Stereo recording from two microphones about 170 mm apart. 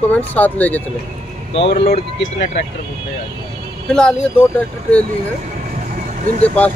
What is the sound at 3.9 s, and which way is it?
Speech, 5° left (ahead or behind).